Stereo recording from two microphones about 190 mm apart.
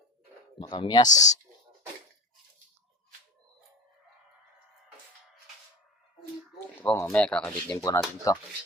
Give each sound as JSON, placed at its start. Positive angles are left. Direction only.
{"t": 0.6, "sound": "speech", "side_deg": 20}
{"t": 1.0, "sound": "speech", "side_deg": 40}
{"t": 6.8, "sound": "speech", "side_deg": 10}